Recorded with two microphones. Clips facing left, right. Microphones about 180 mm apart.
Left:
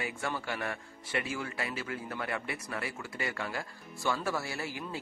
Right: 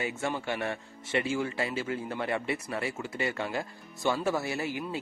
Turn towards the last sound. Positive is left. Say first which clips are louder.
# right 5 dB
turn(degrees=-20)  # may be behind; listen again after turning